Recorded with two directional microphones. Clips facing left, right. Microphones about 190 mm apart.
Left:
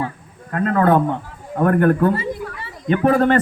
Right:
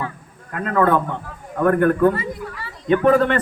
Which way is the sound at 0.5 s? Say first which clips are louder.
Left 2 dB; 40° left (ahead or behind).